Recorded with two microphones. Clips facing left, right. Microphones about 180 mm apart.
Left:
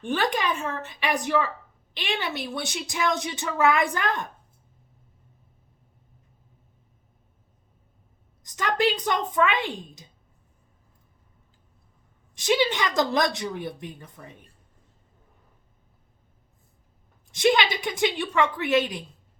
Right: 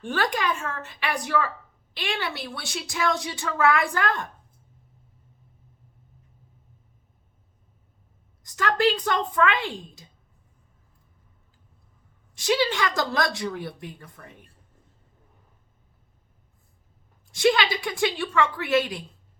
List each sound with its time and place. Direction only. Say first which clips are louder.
0.0 s a woman's voice: left 1 dB; 20° left (ahead or behind)
8.4 s speech: right 1 dB; 20° left (ahead or behind)
12.3 s a woman's voice: left 1 dB; 20° left (ahead or behind)
17.3 s a woman's voice: even; 20° left (ahead or behind)